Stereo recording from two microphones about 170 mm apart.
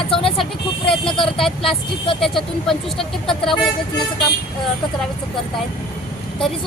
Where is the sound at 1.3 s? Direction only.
Centre (ahead or behind).